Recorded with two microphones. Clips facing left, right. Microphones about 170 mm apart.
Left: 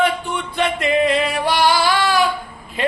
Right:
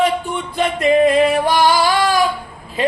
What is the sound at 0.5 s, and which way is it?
Singing, 40° right (ahead or behind).